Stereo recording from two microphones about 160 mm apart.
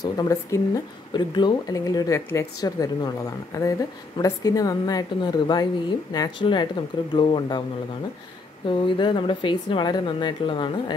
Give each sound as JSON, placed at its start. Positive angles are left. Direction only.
{"t": 0.0, "sound": "a woman's voice", "side_deg": 25}
{"t": 8.6, "sound": "speech", "side_deg": 30}